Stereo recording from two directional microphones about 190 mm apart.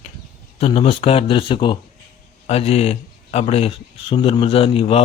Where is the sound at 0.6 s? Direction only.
30° left (ahead or behind).